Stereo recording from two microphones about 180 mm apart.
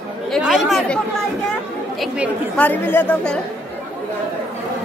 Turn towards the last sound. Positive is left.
turn(degrees=5)  # may be behind; listen again after turning